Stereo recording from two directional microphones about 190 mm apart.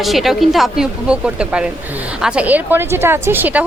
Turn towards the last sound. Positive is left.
turn(degrees=-10)  # may be behind; listen again after turning